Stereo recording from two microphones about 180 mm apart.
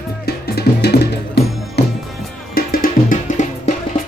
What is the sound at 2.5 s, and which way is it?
Music, 55° left (ahead or behind).